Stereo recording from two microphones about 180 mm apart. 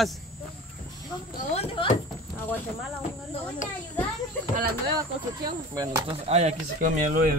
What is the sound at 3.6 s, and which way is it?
Children playing, 45° left (ahead or behind).